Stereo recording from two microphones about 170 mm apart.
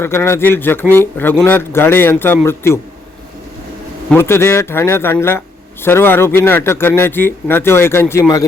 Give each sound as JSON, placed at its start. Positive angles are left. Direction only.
{"t": 0.0, "sound": "a man's voice", "side_deg": 15}
{"t": 4.1, "sound": "a man's voice", "side_deg": 15}